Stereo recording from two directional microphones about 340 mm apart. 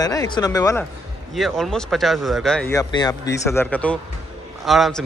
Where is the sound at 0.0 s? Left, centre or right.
Centre.